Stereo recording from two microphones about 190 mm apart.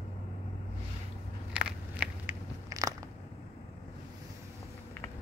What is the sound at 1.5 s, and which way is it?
Biting, 5° right (ahead or behind).